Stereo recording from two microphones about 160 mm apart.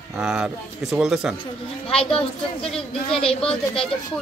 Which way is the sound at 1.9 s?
35° left (ahead or behind).